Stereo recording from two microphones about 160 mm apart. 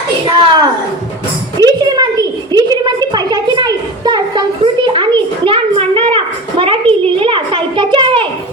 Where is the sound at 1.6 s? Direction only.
25° right (ahead or behind).